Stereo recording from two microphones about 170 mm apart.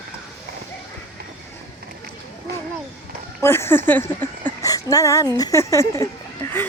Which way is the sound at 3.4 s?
15° left (ahead or behind).